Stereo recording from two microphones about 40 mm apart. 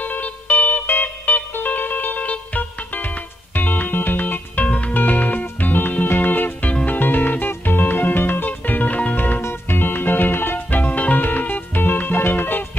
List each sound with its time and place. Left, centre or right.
0.0 s music: left
4.6 s music: left
4.9 s music: left
9.1 s music: left
9.5 s music: left
10.7 s music: left